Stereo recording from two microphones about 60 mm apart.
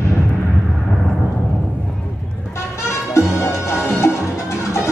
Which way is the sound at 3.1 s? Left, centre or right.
Left.